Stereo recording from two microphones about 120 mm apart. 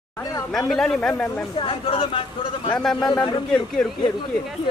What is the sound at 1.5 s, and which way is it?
Speech, 45° left (ahead or behind).